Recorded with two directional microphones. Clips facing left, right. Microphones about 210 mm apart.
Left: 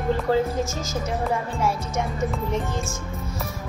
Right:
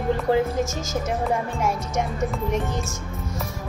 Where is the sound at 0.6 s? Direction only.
45° right (ahead or behind).